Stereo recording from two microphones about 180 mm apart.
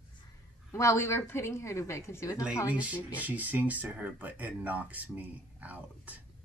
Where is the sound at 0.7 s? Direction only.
15° left (ahead or behind).